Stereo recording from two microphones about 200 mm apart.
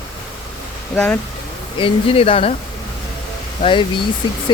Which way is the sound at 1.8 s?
30° left (ahead or behind).